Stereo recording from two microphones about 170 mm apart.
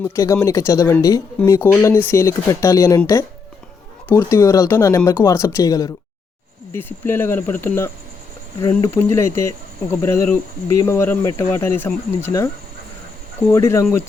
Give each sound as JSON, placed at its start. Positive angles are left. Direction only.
{"t": 0.0, "sound": "speech", "side_deg": 15}
{"t": 4.1, "sound": "speech", "side_deg": 15}
{"t": 13.5, "sound": "speech", "side_deg": 15}